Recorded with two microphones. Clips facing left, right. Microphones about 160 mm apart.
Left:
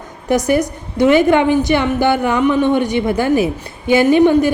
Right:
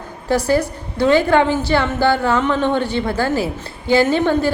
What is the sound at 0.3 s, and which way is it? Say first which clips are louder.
A woman's voice: left 2 dB; 20° left (ahead or behind).